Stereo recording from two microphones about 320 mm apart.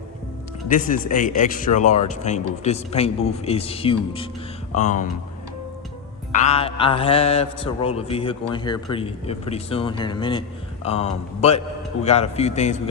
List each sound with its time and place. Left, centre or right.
0.7 s speech: left
6.3 s speech: left